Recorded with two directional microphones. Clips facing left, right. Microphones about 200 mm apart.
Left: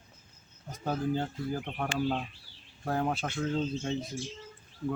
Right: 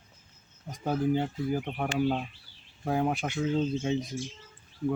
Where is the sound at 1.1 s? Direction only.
10° right (ahead or behind).